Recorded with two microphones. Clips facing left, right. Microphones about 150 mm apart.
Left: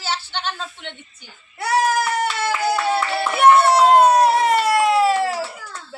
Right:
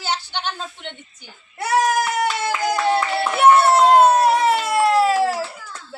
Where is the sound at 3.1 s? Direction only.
5° left (ahead or behind).